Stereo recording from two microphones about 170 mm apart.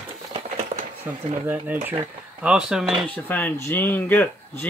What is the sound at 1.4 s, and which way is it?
Speech, 10° right (ahead or behind).